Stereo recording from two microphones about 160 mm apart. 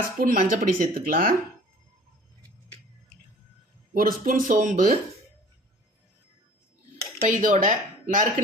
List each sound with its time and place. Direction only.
0.2 s speech: 60° right (ahead or behind)
3.9 s speech: 60° right (ahead or behind)
7.2 s speech: 55° right (ahead or behind)